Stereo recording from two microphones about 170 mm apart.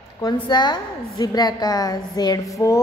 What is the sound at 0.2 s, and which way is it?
Speech, 25° left (ahead or behind).